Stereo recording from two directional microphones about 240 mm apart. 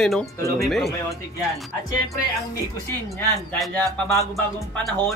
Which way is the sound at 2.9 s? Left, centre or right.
Centre.